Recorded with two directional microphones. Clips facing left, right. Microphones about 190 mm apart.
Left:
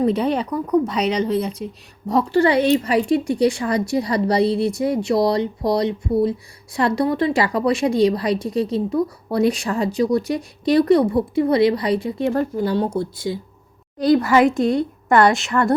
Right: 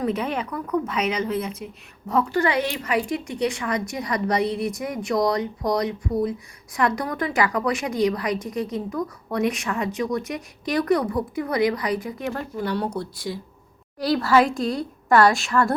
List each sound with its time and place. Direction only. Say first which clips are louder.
0.0 s a woman's voice: left 6 dB; 35° left (ahead or behind)
14.6 s a woman's voice: left 7 dB; centre (ahead or behind)